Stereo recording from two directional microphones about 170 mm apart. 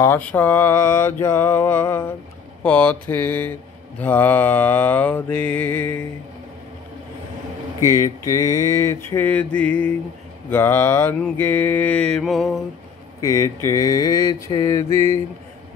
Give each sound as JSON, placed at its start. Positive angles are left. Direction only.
{"t": 0.0, "sound": "mantra", "side_deg": 10}
{"t": 7.9, "sound": "mantra", "side_deg": 20}
{"t": 13.2, "sound": "mantra", "side_deg": 20}